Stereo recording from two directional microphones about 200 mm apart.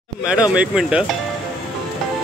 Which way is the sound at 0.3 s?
5° right (ahead or behind).